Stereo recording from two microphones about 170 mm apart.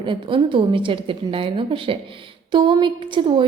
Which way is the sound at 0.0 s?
30° right (ahead or behind).